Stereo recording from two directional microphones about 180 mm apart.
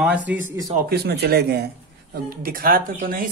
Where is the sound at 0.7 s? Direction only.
55° right (ahead or behind).